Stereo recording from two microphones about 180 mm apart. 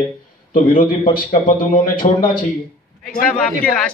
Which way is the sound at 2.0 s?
40° left (ahead or behind).